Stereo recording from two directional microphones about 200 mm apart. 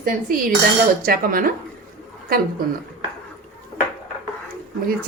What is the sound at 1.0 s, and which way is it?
Speech, 45° right (ahead or behind).